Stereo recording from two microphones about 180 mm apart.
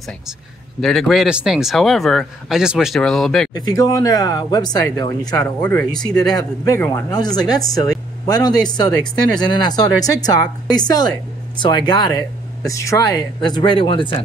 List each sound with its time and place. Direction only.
0.7 s speech: centre (ahead or behind)
3.5 s a woman's voice: 20° left (ahead or behind)
5.6 s a woman's voice: 10° left (ahead or behind); by 14.1 s 25° left (ahead or behind)